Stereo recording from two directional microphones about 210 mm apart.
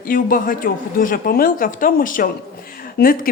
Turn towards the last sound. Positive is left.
turn(degrees=45)  # may be behind; listen again after turning